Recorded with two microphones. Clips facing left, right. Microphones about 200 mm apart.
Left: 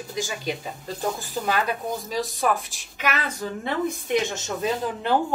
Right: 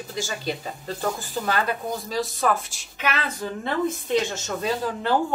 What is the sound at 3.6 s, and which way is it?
Speech, 15° left (ahead or behind).